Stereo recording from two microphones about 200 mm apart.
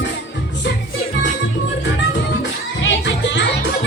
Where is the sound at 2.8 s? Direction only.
65° left (ahead or behind).